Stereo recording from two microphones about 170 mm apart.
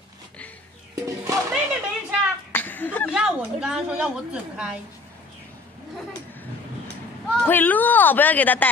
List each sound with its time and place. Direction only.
1.0 s music: 20° right (ahead or behind)
1.5 s a sound: 5° right (ahead or behind)
2.5 s chuckle: 10° left (ahead or behind)
3.1 s a woman's voice: 5° right (ahead or behind)
7.4 s speech: 10° left (ahead or behind)